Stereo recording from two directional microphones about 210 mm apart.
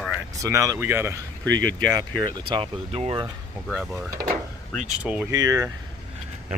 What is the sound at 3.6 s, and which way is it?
Speech, centre (ahead or behind).